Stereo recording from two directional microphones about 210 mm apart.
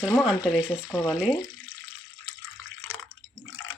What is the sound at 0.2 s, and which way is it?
Speech, centre (ahead or behind).